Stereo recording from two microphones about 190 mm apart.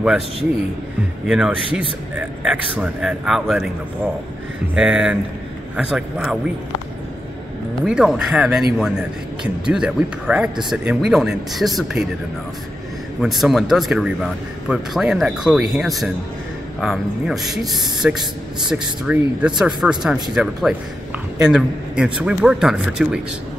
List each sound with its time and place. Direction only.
1.2 s a man's voice: 5° right (ahead or behind)
4.7 s speech: 5° right (ahead or behind)
7.8 s speech: 5° right (ahead or behind)
13.2 s speech: centre (ahead or behind)